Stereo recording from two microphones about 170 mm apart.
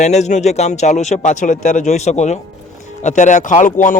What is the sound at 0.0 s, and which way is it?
Speech, 40° left (ahead or behind).